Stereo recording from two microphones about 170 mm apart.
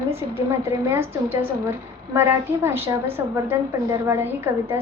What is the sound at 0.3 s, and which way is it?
A woman's voice, 15° right (ahead or behind).